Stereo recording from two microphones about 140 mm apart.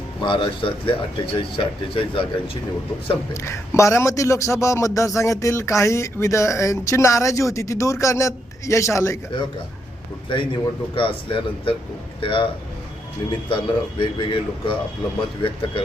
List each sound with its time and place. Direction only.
0.2 s speech: 35° left (ahead or behind)
3.3 s a man's voice: 20° left (ahead or behind)
10.2 s speech: 35° left (ahead or behind)
13.5 s speech: 35° left (ahead or behind)